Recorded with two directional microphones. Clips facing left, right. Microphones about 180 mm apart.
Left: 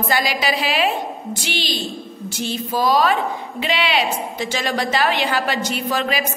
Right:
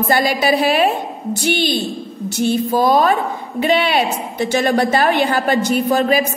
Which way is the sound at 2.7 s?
50° right (ahead or behind).